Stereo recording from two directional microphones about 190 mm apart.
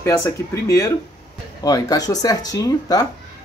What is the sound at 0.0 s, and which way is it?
Speech, 15° left (ahead or behind).